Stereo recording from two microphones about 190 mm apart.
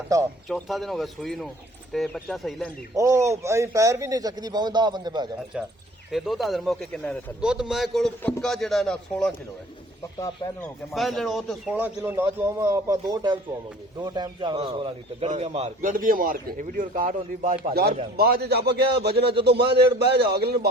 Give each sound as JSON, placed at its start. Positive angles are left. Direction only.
{"t": 0.1, "sound": "speech", "side_deg": -15}
{"t": 0.4, "sound": "a man's voice", "side_deg": 0}
{"t": 2.9, "sound": "speech", "side_deg": -15}
{"t": 5.5, "sound": "a man's voice", "side_deg": -5}
{"t": 10.2, "sound": "speech", "side_deg": 20}
{"t": 10.6, "sound": "a man's voice", "side_deg": 0}